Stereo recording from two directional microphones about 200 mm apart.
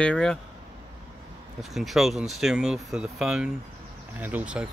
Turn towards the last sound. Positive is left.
turn(degrees=-5)  # may be behind; listen again after turning